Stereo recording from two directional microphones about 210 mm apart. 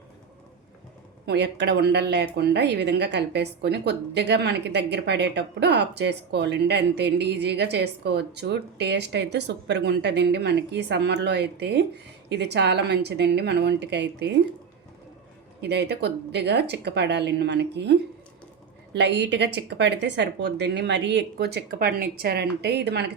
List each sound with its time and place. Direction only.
1.3 s a woman's voice: 55° right (ahead or behind)
15.6 s a woman's voice: 55° right (ahead or behind)
18.9 s a woman's voice: 55° right (ahead or behind)